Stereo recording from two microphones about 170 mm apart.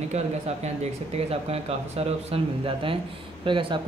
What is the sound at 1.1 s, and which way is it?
Speech, 35° right (ahead or behind).